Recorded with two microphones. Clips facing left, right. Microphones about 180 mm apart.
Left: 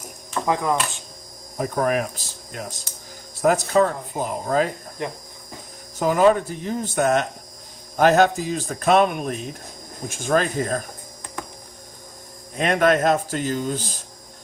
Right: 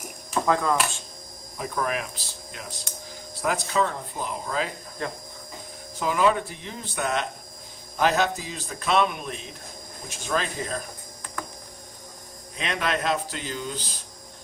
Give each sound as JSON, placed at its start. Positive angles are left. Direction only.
{"t": 0.4, "sound": "speech", "side_deg": 15}
{"t": 1.5, "sound": "speech", "side_deg": 45}
{"t": 5.0, "sound": "speech", "side_deg": 20}
{"t": 6.0, "sound": "speech", "side_deg": 45}
{"t": 12.5, "sound": "speech", "side_deg": 50}